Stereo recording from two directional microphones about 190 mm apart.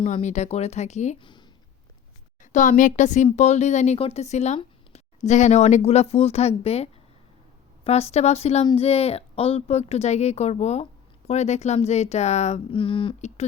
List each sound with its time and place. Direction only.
0.0 s speech: 40° left (ahead or behind)
1.2 s speech: 25° left (ahead or behind)
2.4 s speech: 40° left (ahead or behind)